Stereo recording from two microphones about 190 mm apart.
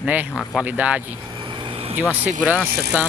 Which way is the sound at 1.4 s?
25° right (ahead or behind).